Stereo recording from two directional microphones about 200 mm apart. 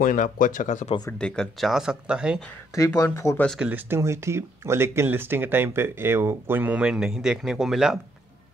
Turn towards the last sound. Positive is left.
turn(degrees=-5)  # may be behind; listen again after turning